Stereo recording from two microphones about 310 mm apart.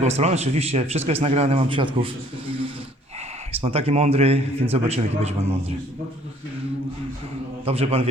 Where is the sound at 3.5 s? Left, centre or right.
Centre.